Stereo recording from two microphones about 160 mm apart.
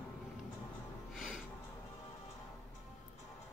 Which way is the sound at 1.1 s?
Centre (ahead or behind).